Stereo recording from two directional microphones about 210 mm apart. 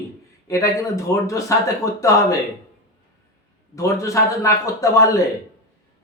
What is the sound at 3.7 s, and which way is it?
A man's voice, 15° left (ahead or behind).